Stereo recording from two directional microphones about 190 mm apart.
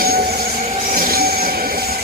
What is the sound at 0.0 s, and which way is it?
Train, 55° right (ahead or behind).